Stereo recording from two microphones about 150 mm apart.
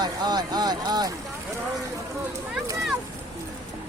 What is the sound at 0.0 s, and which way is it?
Speech, 25° right (ahead or behind).